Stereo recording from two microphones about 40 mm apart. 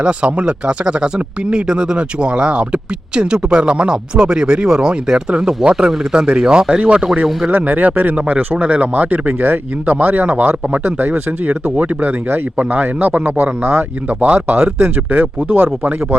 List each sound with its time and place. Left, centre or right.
0.0 s speech: right
7.5 s speech: right
10.8 s speech: right
12.5 s speech: right
15.1 s speech: right